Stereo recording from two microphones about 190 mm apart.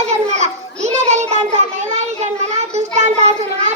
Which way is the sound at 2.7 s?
35° right (ahead or behind).